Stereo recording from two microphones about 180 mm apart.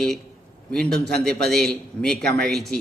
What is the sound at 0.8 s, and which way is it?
Speech, 65° right (ahead or behind).